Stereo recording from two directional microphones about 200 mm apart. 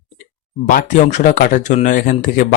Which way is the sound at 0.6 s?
40° left (ahead or behind).